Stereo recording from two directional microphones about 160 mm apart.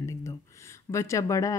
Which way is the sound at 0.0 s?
20° left (ahead or behind).